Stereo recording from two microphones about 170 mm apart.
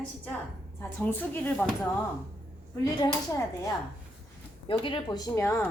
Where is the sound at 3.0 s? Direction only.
20° left (ahead or behind).